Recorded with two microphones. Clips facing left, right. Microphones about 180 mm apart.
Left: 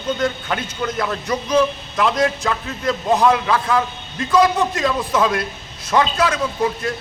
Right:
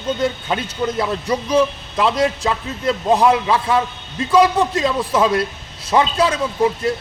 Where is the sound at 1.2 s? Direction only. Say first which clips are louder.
Even; 30° right (ahead or behind).